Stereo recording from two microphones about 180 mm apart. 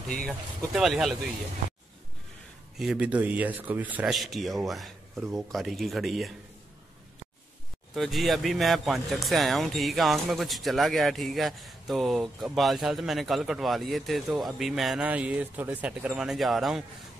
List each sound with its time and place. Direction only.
0.7 s speech: centre (ahead or behind)
2.8 s speech: 5° right (ahead or behind)
7.9 s speech: centre (ahead or behind)